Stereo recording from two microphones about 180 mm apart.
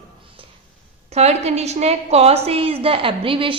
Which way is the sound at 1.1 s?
35° right (ahead or behind).